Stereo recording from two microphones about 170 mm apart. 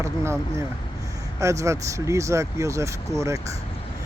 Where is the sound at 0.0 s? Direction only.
15° right (ahead or behind).